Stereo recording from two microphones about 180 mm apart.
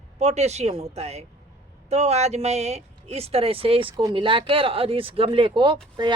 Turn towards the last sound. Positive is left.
turn(degrees=-25)  # may be behind; listen again after turning